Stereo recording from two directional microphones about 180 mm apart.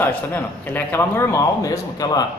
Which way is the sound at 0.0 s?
10° left (ahead or behind).